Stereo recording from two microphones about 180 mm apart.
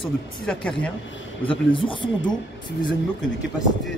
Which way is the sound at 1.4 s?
30° left (ahead or behind).